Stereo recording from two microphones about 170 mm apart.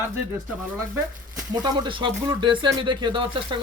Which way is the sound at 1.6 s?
25° right (ahead or behind).